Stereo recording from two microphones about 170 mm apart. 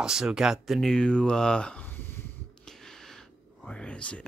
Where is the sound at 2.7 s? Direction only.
5° left (ahead or behind).